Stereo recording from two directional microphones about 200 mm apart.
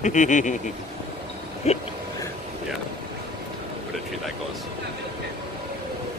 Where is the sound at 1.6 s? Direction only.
35° left (ahead or behind).